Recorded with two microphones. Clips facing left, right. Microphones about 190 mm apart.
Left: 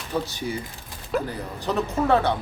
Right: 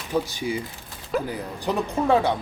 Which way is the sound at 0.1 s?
15° right (ahead or behind).